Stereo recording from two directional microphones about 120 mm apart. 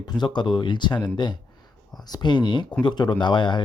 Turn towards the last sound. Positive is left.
turn(degrees=40)  # may be behind; listen again after turning